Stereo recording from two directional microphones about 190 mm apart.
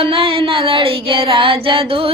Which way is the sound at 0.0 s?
30° right (ahead or behind).